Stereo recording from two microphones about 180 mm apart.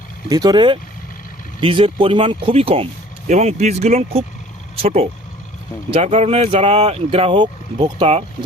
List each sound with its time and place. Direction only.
0.3 s speech: 20° right (ahead or behind)